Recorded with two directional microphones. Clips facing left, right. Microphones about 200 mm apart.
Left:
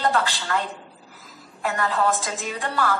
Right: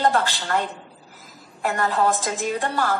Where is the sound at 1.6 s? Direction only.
40° right (ahead or behind).